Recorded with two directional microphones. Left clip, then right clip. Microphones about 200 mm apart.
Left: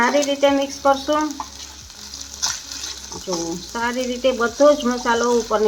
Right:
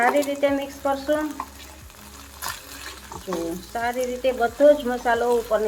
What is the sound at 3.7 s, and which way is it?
Speech, 45° left (ahead or behind).